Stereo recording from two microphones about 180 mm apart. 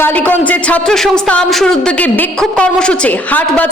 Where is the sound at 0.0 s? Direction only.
10° left (ahead or behind).